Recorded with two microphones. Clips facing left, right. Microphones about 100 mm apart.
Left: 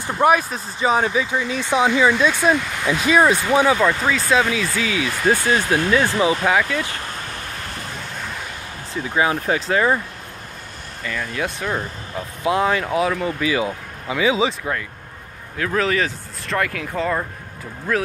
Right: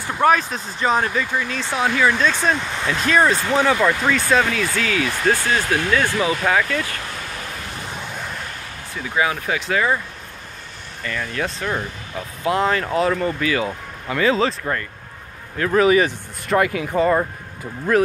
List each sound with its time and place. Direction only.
0.1 s speech: 10° left (ahead or behind)
3.8 s speech: centre (ahead or behind); by 6.6 s 15° left (ahead or behind)
9.1 s speech: 30° left (ahead or behind)
11.1 s speech: 5° left (ahead or behind)